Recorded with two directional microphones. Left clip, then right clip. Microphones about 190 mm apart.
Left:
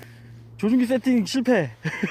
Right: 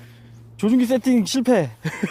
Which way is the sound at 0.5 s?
20° right (ahead or behind).